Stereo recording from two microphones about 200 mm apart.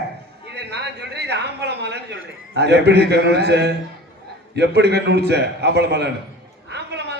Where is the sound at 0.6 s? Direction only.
55° right (ahead or behind).